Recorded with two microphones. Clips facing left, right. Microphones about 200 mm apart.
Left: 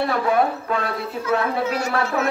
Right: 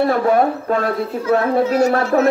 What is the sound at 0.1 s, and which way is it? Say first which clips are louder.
A child's voice: right 5 dB; 45° right (ahead or behind).